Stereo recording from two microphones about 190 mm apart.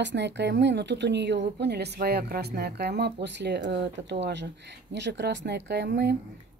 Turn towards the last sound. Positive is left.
turn(degrees=-60)  # may be behind; listen again after turning